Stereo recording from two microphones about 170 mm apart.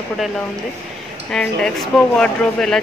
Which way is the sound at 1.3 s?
5° left (ahead or behind).